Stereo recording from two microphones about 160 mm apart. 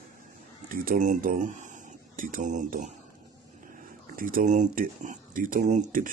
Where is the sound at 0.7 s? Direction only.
55° right (ahead or behind).